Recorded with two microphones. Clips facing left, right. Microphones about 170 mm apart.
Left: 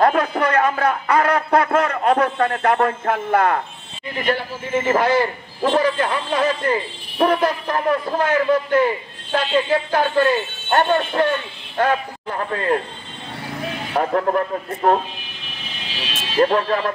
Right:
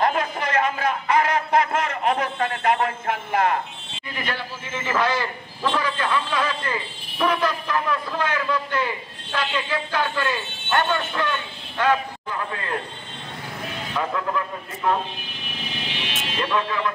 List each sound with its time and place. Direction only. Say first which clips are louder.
0.0 s a sound: left 6 dB; 60° left (ahead or behind)
4.3 s a man's voice: left 11 dB; 45° left (ahead or behind)
13.9 s a man's voice: left 7 dB; 50° left (ahead or behind)
16.3 s speech: left 8 dB; 50° left (ahead or behind)